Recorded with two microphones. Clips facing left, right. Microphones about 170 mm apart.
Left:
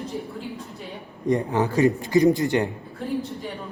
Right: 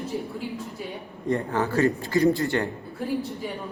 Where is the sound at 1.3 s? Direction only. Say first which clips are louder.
Left 3 dB; 15° left (ahead or behind).